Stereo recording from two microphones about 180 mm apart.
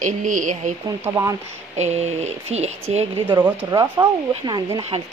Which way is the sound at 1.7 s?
40° right (ahead or behind).